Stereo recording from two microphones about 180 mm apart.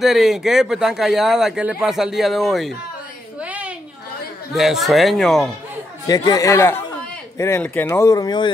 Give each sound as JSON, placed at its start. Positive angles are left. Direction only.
{"t": 0.0, "sound": "speech", "side_deg": 0}
{"t": 3.3, "sound": "a sound", "side_deg": -5}
{"t": 4.6, "sound": "speech", "side_deg": 0}
{"t": 6.0, "sound": "speech", "side_deg": 20}